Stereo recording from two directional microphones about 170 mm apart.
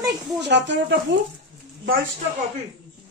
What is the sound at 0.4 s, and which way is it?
Speech, 90° right.